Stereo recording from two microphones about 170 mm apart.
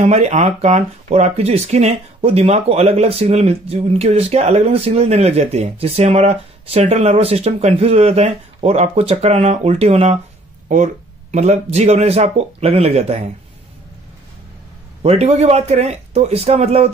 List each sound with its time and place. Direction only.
0.0 s speech: 40° right (ahead or behind)
11.3 s speech: 40° right (ahead or behind)
15.0 s speech: 40° right (ahead or behind)